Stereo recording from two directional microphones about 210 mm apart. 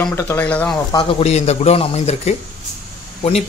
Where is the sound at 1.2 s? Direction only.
30° left (ahead or behind).